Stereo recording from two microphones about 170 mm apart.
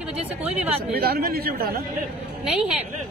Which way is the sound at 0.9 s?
65° right (ahead or behind).